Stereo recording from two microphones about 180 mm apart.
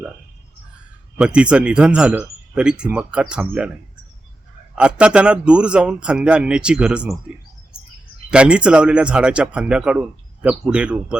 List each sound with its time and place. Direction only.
1.2 s speech: 5° right (ahead or behind)
4.7 s speech: 5° right (ahead or behind)
7.7 s bird: 5° right (ahead or behind)
8.3 s speech: 5° right (ahead or behind)